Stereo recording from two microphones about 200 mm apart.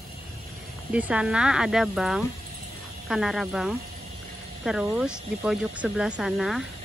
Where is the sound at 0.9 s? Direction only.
5° right (ahead or behind).